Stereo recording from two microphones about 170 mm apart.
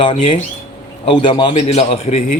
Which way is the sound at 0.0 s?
30° left (ahead or behind).